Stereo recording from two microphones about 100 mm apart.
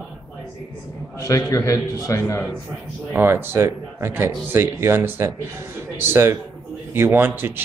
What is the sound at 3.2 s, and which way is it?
A man's voice, 25° right (ahead or behind).